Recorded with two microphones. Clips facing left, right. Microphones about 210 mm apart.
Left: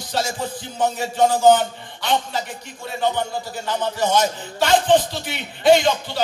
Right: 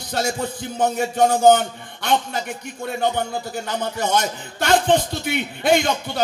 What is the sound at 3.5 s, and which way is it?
Music, 55° right (ahead or behind).